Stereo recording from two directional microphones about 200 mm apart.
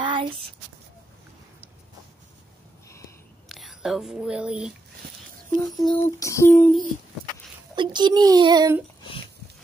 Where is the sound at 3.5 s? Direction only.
Centre (ahead or behind).